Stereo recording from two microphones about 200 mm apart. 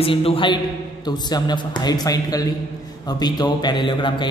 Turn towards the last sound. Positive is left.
turn(degrees=25)  # may be behind; listen again after turning